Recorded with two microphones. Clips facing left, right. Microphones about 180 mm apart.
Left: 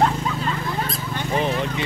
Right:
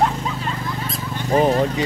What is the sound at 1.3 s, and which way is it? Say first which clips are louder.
Speech: right 7 dB; 40° right (ahead or behind).